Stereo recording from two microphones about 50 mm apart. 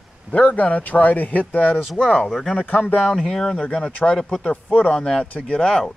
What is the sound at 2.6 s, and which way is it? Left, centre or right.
Speech, left.